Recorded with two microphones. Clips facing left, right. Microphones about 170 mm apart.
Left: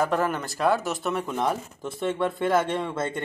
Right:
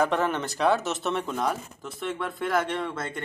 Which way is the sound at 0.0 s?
Centre (ahead or behind).